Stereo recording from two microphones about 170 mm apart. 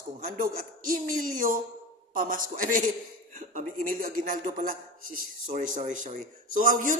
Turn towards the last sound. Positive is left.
turn(degrees=-50)  # may be behind; listen again after turning